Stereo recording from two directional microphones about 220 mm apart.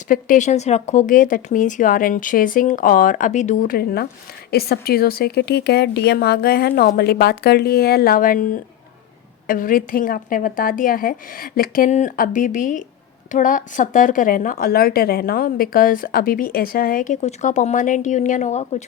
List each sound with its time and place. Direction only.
0.1 s a woman's voice: 35° left (ahead or behind)